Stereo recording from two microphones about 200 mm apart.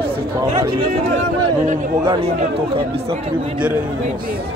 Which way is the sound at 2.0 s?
20° right (ahead or behind).